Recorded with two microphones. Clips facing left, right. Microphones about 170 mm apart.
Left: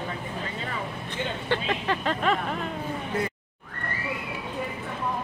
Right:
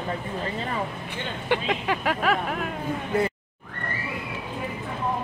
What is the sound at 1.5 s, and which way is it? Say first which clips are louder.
Speech: right 3 dB; 15° right (ahead or behind).